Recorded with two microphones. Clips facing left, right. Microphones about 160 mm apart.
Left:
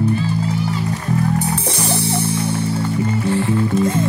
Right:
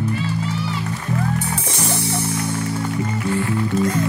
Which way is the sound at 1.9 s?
30° left (ahead or behind).